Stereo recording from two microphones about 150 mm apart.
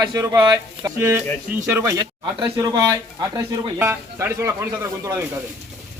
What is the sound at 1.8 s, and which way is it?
A man's voice, 30° right (ahead or behind).